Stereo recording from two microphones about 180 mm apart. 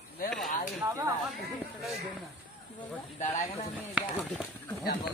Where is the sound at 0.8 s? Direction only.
15° right (ahead or behind).